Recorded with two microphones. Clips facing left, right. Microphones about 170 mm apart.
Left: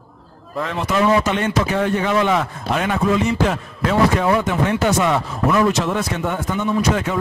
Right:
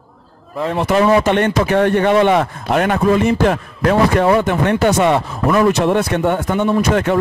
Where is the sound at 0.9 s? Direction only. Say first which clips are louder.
Right 4 dB; 60° right (ahead or behind).